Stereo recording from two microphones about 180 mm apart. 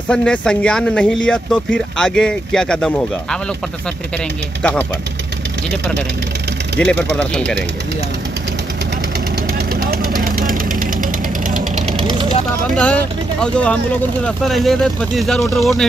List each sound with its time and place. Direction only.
0.1 s speech: 5° left (ahead or behind)
6.8 s speech: 5° left (ahead or behind)
9.5 s vehicle: 60° right (ahead or behind); by 12.1 s 40° right (ahead or behind)
12.1 s vehicle: 25° right (ahead or behind)
12.7 s speech: 5° left (ahead or behind)